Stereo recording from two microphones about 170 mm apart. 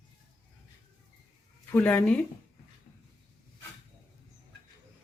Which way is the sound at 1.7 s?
10° left (ahead or behind).